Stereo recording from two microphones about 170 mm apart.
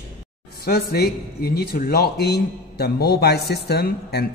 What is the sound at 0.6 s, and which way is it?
Speech, 65° left (ahead or behind).